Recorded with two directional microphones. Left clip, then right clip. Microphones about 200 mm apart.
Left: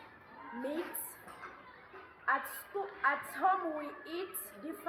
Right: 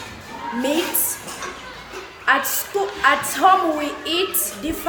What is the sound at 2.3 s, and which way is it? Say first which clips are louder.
A woman's voice: right 15 dB; 15° right (ahead or behind).